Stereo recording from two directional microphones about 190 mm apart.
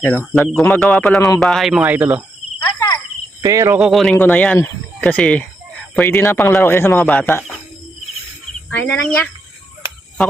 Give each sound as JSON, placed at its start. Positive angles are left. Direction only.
{"t": 0.0, "sound": "speech", "side_deg": 10}
{"t": 2.6, "sound": "cricket", "side_deg": 15}
{"t": 3.4, "sound": "speech", "side_deg": -15}
{"t": 3.8, "sound": "speech", "side_deg": 0}
{"t": 4.1, "sound": "speech", "side_deg": 10}
{"t": 8.7, "sound": "speech", "side_deg": 5}